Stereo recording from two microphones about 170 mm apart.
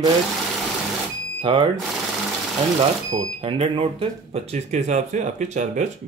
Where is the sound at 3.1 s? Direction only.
30° right (ahead or behind).